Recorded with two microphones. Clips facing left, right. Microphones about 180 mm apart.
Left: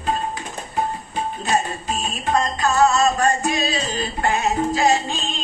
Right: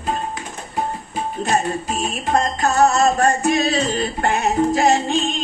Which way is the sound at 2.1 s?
55° right (ahead or behind).